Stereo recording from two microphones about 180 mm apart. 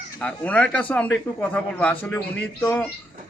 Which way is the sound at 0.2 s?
5° left (ahead or behind).